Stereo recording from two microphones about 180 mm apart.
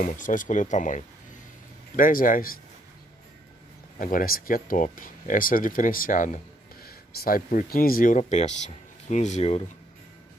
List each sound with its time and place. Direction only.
0.0 s speech: 45° left (ahead or behind)
4.0 s speech: 50° left (ahead or behind); by 9.7 s 35° left (ahead or behind)